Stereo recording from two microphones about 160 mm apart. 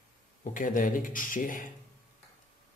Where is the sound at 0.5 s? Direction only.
55° left (ahead or behind).